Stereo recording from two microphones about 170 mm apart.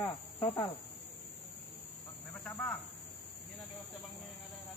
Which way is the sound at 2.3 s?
10° left (ahead or behind).